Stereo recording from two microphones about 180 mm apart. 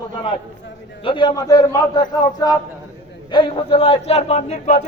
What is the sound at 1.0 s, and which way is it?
A man's voice, 25° left (ahead or behind).